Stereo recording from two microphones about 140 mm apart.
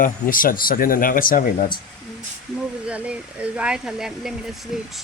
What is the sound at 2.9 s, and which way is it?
Speech, 10° right (ahead or behind).